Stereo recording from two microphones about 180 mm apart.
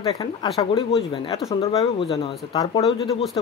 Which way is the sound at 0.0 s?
30° left (ahead or behind).